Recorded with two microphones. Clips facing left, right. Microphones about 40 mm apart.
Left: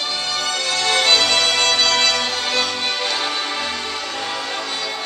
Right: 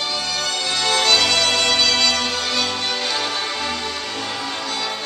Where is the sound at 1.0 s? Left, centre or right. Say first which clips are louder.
Left 1 dB; centre.